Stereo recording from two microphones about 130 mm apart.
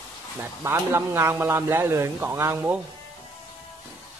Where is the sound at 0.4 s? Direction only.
20° right (ahead or behind).